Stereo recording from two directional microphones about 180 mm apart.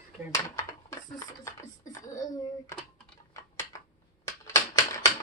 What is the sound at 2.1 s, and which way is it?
Speech, 20° left (ahead or behind).